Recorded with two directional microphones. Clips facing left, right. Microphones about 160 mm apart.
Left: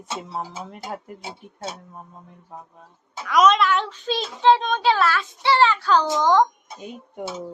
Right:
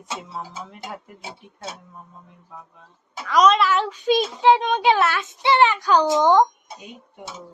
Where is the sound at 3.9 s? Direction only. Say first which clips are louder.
Right 7 dB; 15° right (ahead or behind).